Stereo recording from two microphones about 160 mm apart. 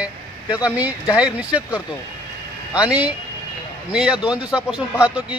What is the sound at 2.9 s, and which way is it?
Speech, 10° right (ahead or behind).